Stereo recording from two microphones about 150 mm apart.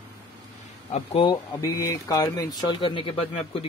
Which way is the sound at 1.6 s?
20° left (ahead or behind).